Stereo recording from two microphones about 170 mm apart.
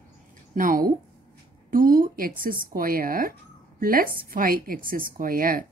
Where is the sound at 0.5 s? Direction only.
55° right (ahead or behind).